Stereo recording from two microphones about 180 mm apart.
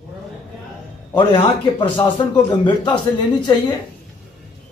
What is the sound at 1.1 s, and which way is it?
A man's voice, 25° left (ahead or behind).